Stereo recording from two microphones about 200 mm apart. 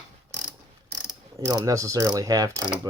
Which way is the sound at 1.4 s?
15° right (ahead or behind).